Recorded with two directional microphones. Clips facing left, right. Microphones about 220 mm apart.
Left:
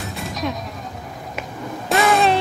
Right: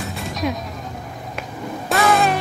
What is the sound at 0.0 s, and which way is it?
Music, centre (ahead or behind).